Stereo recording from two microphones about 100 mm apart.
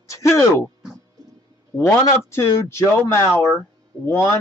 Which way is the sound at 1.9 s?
25° left (ahead or behind).